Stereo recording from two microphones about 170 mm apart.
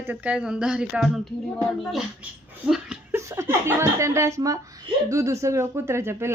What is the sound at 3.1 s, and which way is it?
Speech, 15° right (ahead or behind).